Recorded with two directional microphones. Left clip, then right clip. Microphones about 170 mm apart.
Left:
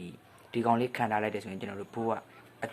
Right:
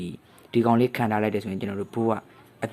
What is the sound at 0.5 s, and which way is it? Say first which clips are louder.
Speech: right 6 dB; 25° right (ahead or behind).